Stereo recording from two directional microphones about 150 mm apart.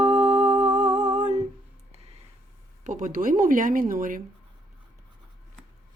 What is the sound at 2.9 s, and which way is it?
A woman's voice, 65° right (ahead or behind).